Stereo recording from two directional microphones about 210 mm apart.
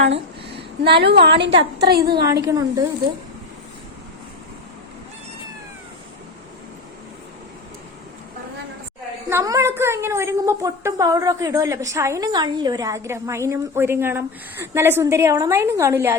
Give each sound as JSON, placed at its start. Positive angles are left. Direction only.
{"t": 0.9, "sound": "a woman's voice", "side_deg": -50}
{"t": 2.2, "sound": "a woman's voice", "side_deg": -15}
{"t": 9.3, "sound": "a woman's voice", "side_deg": -15}